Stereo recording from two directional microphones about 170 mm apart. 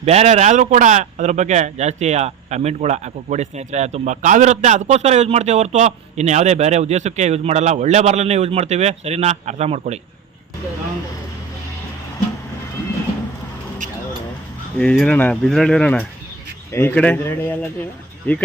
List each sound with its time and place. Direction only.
0.0 s a man's voice: 40° right (ahead or behind)
14.8 s speech: 5° left (ahead or behind)